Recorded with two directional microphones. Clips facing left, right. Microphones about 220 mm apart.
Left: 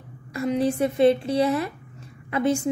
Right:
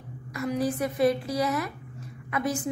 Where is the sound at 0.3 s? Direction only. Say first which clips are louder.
Left 4 dB; 25° left (ahead or behind).